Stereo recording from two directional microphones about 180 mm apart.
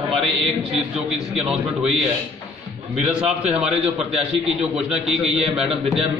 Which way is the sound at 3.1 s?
5° right (ahead or behind).